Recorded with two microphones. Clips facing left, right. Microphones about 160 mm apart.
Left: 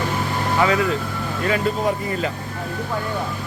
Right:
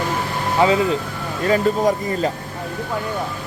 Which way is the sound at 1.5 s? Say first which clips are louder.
Right 4 dB; 40° right (ahead or behind).